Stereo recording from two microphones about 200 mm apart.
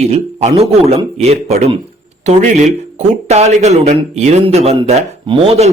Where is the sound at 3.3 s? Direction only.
35° right (ahead or behind).